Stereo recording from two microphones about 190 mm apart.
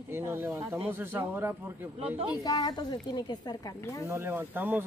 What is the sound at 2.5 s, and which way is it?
A woman's voice, 20° left (ahead or behind).